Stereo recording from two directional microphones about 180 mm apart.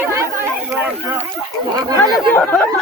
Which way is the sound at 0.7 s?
10° right (ahead or behind).